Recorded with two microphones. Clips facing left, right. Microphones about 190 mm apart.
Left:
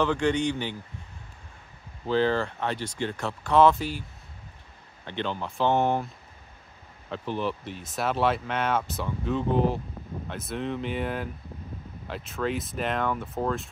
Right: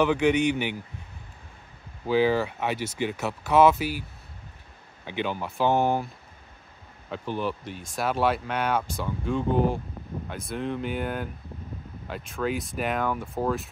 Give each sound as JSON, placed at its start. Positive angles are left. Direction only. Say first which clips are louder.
{"t": 0.0, "sound": "speech", "louder": "right 3 dB", "side_deg": -10}
{"t": 2.0, "sound": "speech", "louder": "right 2 dB", "side_deg": -10}
{"t": 5.0, "sound": "speech", "louder": "right 1 dB", "side_deg": -10}
{"t": 7.1, "sound": "speech", "louder": "even", "side_deg": 0}